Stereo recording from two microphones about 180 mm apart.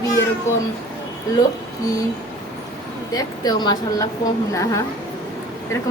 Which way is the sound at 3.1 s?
20° left (ahead or behind).